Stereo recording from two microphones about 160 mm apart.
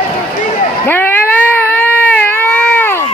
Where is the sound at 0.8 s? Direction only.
10° left (ahead or behind).